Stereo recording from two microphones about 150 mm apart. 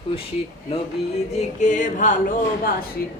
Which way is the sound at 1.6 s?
55° left (ahead or behind).